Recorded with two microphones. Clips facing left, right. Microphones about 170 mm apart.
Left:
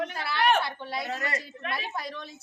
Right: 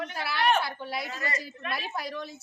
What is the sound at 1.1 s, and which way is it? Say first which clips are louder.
Speech: left 2 dB; 65° left (ahead or behind).